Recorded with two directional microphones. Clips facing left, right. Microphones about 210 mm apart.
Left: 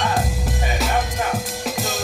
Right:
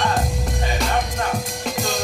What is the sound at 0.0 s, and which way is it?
Music, centre (ahead or behind).